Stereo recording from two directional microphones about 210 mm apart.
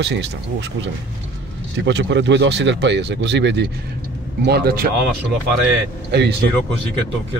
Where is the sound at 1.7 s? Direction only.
55° right (ahead or behind).